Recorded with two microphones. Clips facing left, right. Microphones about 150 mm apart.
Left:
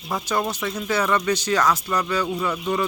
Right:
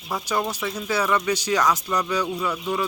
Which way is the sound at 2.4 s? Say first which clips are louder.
Left 2 dB; 5° right (ahead or behind).